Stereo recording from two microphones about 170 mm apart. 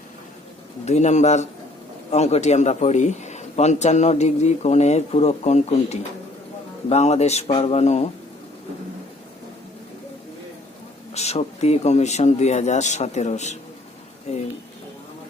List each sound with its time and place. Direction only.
0.9 s a man's voice: 40° left (ahead or behind)
11.1 s a man's voice: 40° left (ahead or behind)